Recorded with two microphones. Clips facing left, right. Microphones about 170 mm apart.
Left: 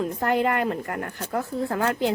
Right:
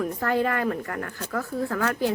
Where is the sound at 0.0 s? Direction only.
20° left (ahead or behind).